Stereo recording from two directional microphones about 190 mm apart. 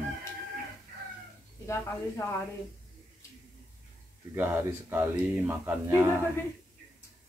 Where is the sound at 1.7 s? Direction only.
15° left (ahead or behind).